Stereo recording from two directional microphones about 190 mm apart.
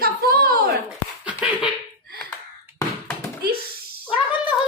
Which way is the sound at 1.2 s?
5° right (ahead or behind).